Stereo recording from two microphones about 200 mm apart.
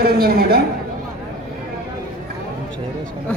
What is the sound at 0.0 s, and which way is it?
Speech, 50° right (ahead or behind).